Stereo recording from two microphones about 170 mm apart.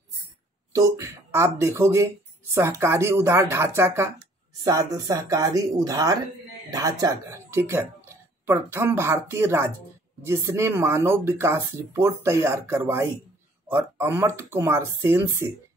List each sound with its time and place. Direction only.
0.7 s speech: 15° right (ahead or behind)